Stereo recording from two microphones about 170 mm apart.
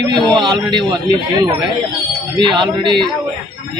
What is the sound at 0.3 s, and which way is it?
A man's voice, 25° right (ahead or behind).